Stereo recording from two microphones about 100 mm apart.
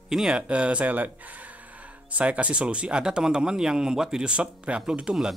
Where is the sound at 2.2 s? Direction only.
15° right (ahead or behind).